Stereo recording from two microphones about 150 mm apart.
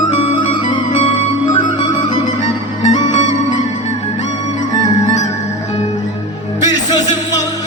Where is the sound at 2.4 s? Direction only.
50° left (ahead or behind).